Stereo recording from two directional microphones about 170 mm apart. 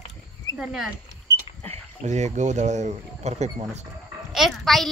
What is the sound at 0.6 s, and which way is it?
Speech, 5° right (ahead or behind).